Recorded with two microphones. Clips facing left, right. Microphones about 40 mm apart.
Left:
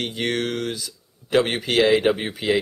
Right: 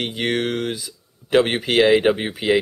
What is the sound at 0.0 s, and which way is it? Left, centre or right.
Speech, centre.